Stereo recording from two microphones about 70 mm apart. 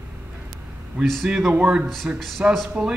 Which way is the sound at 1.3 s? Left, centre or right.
Centre.